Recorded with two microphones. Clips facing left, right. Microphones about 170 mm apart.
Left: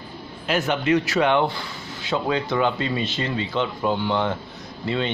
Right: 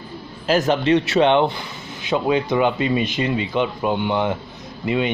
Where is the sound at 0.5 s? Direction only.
35° right (ahead or behind).